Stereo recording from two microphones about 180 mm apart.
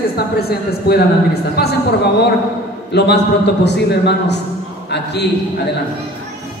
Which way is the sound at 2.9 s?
70° left (ahead or behind).